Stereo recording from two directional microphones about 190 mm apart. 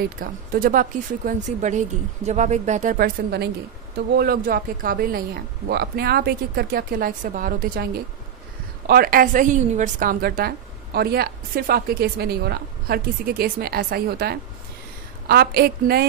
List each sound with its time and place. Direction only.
0.2 s a woman's voice: 50° right (ahead or behind)